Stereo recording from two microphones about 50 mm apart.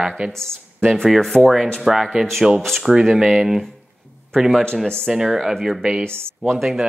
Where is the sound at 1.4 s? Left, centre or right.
Centre.